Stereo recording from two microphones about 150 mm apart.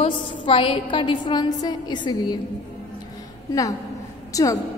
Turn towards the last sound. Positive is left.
turn(degrees=25)  # may be behind; listen again after turning